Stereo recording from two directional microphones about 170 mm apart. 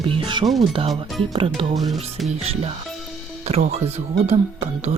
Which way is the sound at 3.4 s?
40° right (ahead or behind).